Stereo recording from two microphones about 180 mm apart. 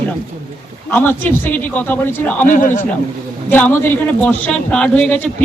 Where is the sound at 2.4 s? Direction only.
45° left (ahead or behind).